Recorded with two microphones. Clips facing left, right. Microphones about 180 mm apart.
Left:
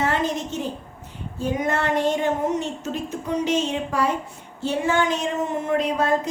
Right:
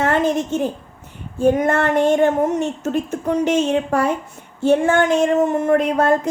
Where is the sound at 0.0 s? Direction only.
50° right (ahead or behind).